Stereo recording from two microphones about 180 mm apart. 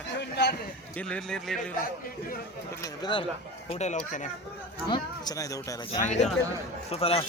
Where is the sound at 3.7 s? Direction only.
40° left (ahead or behind).